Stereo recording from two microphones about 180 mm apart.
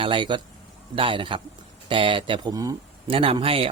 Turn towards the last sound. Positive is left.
turn(degrees=-30)  # may be behind; listen again after turning